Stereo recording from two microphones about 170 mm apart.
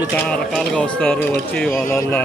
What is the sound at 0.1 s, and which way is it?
Speech, 5° left (ahead or behind).